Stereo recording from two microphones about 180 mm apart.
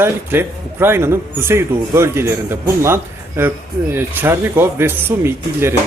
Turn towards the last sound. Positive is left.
turn(degrees=-10)  # may be behind; listen again after turning